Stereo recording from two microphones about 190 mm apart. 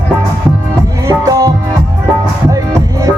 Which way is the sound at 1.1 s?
20° right (ahead or behind).